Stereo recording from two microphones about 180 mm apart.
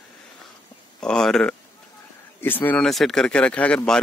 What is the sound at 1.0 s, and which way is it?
Speech, 5° left (ahead or behind).